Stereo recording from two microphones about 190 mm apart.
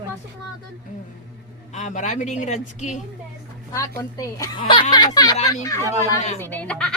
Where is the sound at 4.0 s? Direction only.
15° left (ahead or behind).